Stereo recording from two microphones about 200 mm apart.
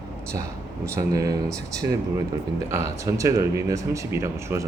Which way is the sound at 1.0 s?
15° right (ahead or behind).